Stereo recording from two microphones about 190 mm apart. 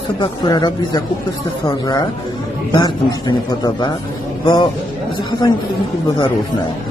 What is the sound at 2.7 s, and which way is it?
A man's voice, 20° left (ahead or behind).